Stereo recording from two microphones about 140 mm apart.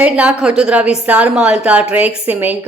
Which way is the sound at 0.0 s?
10° right (ahead or behind).